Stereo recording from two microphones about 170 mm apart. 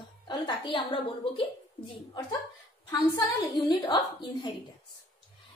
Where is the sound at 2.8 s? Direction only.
20° left (ahead or behind).